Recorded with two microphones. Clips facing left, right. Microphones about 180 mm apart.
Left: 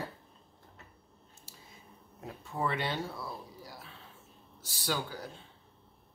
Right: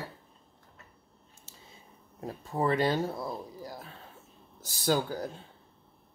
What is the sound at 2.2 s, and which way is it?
Speech, 35° right (ahead or behind).